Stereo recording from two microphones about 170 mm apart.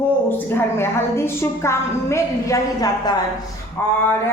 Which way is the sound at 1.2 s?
15° left (ahead or behind).